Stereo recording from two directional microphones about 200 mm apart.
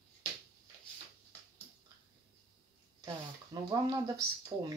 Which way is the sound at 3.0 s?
20° right (ahead or behind).